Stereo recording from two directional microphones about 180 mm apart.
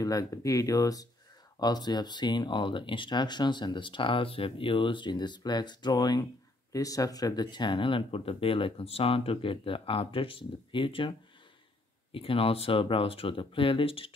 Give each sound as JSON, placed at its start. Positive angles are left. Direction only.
{"t": 0.0, "sound": "speech", "side_deg": 20}